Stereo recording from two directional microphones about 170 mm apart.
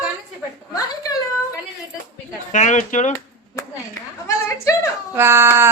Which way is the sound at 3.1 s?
20° left (ahead or behind).